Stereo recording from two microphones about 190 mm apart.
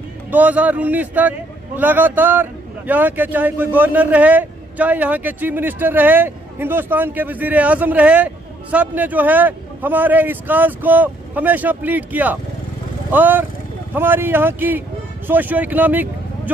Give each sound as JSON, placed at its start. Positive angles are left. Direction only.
{"t": 0.3, "sound": "a man's voice", "side_deg": -10}